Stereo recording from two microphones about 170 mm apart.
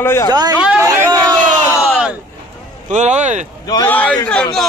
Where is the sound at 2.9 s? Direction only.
45° right (ahead or behind).